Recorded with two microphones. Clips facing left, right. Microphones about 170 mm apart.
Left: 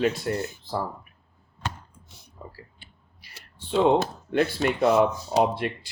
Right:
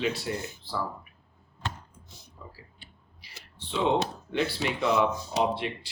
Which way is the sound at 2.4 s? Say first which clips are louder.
Left 5 dB; 45° left (ahead or behind).